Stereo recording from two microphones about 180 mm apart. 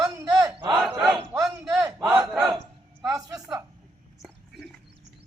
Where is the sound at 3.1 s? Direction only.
20° right (ahead or behind).